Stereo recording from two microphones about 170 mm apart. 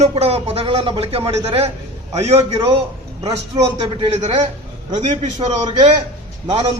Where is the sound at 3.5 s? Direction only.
20° right (ahead or behind).